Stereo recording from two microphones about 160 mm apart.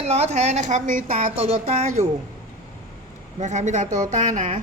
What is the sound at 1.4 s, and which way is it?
Speech, 40° right (ahead or behind).